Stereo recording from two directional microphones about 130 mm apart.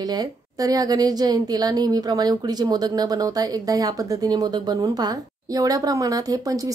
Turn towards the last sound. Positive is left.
turn(degrees=-25)  # may be behind; listen again after turning